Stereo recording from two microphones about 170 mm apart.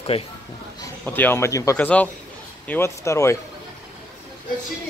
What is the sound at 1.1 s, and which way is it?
Speech, 10° left (ahead or behind).